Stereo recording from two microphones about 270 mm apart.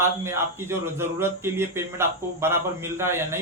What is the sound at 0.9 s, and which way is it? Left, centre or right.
Speech, centre.